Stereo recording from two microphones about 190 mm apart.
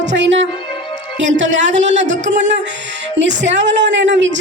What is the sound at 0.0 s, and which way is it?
Speech, 70° right (ahead or behind).